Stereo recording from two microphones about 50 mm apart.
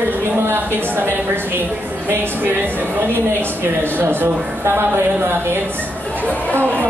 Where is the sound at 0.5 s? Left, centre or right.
Right.